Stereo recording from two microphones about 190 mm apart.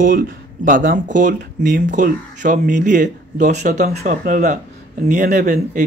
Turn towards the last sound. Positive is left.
turn(degrees=-40)  # may be behind; listen again after turning